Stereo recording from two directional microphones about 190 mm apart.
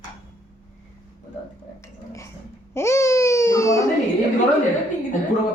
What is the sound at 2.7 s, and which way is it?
Baby cry, 15° left (ahead or behind).